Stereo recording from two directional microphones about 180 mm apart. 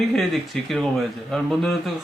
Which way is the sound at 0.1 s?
Centre (ahead or behind).